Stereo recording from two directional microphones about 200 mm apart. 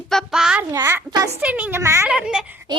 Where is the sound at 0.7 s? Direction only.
15° right (ahead or behind).